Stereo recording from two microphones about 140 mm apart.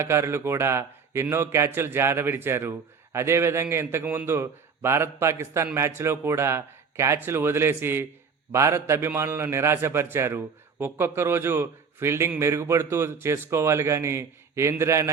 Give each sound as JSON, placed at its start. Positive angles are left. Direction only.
{"t": 0.0, "sound": "a man's voice", "side_deg": -20}